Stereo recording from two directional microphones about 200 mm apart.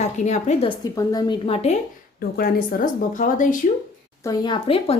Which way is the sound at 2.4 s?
45° left (ahead or behind).